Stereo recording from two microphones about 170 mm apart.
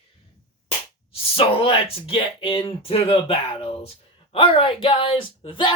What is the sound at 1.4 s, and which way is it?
Speech, 35° left (ahead or behind).